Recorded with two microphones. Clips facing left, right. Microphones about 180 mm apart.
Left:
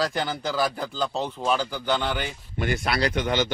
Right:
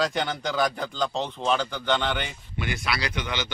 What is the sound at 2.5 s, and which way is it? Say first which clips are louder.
Speech: left 4 dB; 45° left (ahead or behind).